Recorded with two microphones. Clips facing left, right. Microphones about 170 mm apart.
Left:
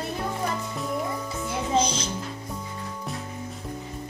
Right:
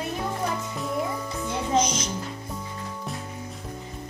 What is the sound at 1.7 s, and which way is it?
Music, 30° left (ahead or behind).